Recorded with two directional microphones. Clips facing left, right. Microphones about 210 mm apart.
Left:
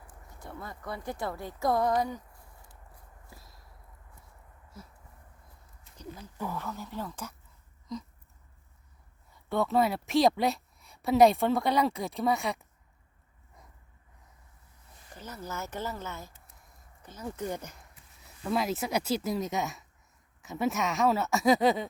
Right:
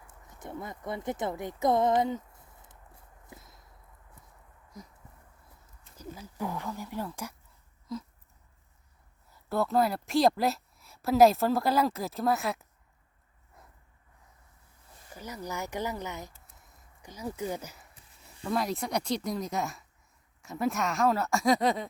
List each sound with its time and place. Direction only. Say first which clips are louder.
0.1 s speech: right 4 dB; 20° right (ahead or behind)
3.2 s clip-clop: right 5 dB; 20° right (ahead or behind)
4.7 s a sound: right 2 dB; 15° right (ahead or behind)
6.0 s a woman's voice: right 2 dB; 10° right (ahead or behind)
9.3 s a woman's voice: even; centre (ahead or behind)
15.1 s a woman's voice: right 2 dB; 10° right (ahead or behind)